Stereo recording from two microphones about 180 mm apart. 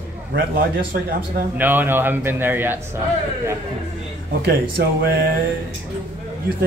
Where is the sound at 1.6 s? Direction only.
10° right (ahead or behind).